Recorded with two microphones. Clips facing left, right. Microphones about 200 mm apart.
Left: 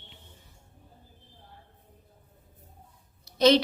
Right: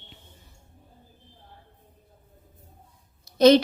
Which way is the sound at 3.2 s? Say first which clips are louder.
Right 5 dB; 50° right (ahead or behind).